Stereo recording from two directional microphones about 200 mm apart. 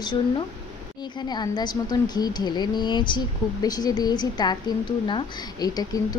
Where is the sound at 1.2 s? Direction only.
20° left (ahead or behind).